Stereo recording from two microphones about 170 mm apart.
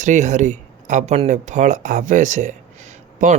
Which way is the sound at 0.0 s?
45° right (ahead or behind).